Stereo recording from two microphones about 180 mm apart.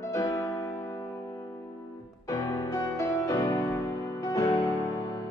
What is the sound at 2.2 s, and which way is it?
Music, 20° left (ahead or behind).